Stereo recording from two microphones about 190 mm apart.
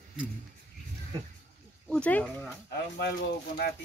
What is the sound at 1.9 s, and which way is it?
Speech, 5° left (ahead or behind).